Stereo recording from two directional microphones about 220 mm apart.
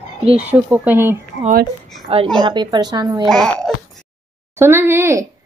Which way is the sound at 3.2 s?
Centre (ahead or behind).